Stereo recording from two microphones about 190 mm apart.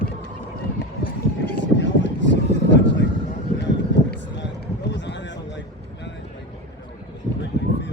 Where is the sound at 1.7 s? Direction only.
70° left (ahead or behind).